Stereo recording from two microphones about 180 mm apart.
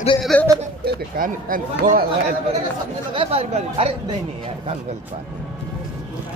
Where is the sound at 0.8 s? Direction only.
55° right (ahead or behind).